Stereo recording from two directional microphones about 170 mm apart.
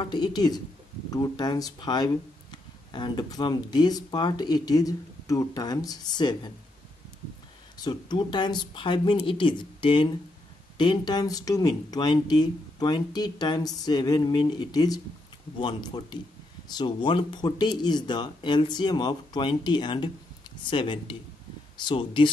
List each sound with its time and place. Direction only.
0.0 s speech: 25° left (ahead or behind)
7.7 s speech: 25° left (ahead or behind)